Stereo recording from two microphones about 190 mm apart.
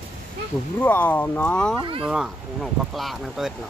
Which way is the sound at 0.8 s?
10° left (ahead or behind).